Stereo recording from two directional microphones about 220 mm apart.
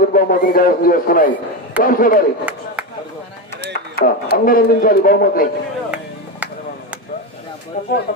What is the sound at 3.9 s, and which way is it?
Speech, 45° left (ahead or behind).